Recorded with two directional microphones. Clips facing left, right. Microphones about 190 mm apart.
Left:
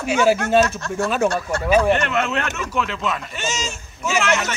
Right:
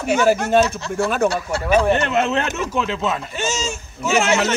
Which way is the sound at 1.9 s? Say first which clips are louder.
Right 2 dB; 30° right (ahead or behind).